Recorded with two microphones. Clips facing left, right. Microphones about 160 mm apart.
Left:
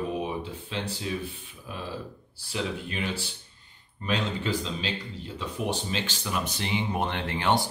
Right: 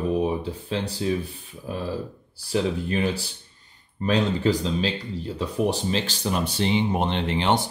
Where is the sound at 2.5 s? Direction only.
40° right (ahead or behind).